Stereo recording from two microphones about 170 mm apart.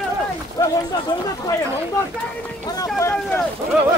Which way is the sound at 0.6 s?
20° left (ahead or behind).